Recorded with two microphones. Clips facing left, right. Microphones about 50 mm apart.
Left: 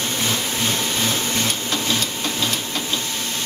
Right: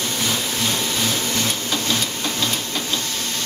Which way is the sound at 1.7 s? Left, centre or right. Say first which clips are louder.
Even; centre.